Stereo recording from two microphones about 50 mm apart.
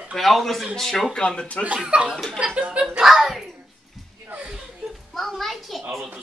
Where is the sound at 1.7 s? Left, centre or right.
Centre.